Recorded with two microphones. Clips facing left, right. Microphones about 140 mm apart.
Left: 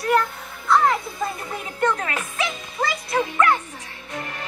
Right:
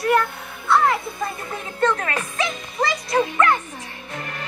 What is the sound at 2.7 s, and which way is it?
Music, 5° left (ahead or behind).